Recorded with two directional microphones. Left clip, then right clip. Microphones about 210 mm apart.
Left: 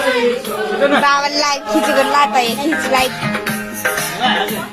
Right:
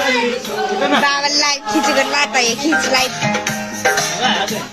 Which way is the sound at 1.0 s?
Centre (ahead or behind).